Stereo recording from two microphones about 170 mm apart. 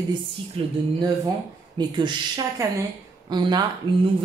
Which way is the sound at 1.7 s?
25° right (ahead or behind).